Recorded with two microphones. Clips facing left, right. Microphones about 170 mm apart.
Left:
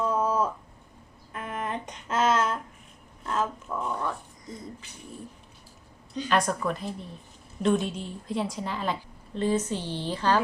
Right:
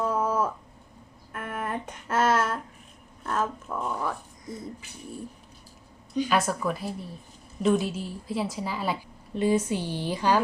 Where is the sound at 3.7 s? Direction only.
5° right (ahead or behind).